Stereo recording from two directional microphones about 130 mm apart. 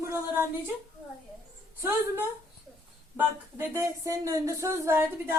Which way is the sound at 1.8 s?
20° right (ahead or behind).